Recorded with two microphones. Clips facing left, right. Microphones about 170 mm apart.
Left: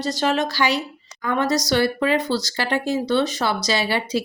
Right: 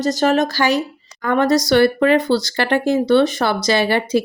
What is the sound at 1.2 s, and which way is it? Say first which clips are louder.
Speech: right 6 dB; 60° right (ahead or behind).